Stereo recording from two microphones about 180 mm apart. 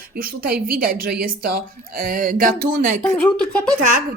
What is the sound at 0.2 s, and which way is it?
Speech, 55° right (ahead or behind).